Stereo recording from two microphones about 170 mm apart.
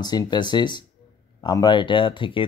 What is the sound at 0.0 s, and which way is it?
Speech, 25° left (ahead or behind).